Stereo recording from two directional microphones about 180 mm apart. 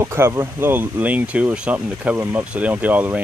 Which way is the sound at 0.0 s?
15° right (ahead or behind).